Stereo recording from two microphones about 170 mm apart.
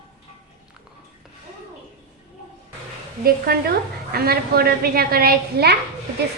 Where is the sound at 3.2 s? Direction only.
65° right (ahead or behind).